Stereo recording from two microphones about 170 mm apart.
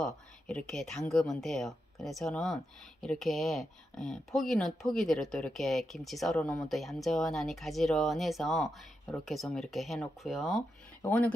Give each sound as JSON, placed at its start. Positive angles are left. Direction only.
{"t": 0.0, "sound": "speech", "side_deg": 5}
{"t": 11.0, "sound": "speech", "side_deg": 10}